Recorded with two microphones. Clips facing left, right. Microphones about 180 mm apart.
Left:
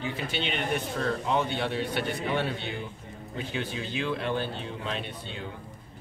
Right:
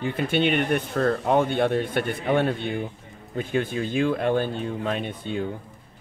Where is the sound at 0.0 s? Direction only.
55° right (ahead or behind).